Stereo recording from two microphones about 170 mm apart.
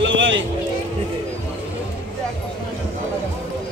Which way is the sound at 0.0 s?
90° right.